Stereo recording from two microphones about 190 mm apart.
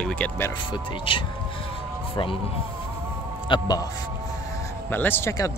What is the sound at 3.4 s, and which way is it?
Speech, 20° left (ahead or behind).